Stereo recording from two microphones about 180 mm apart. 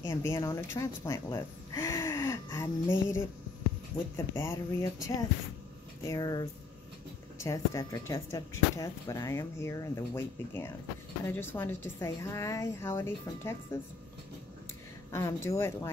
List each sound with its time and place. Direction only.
0.0 s a woman's voice: 15° left (ahead or behind)
6.0 s speech: 20° left (ahead or behind)
15.0 s speech: 15° left (ahead or behind)